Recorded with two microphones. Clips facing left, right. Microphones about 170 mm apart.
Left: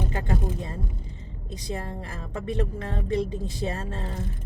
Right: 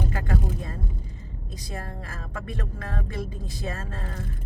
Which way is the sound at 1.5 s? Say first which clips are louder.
Left 4 dB; 20° left (ahead or behind).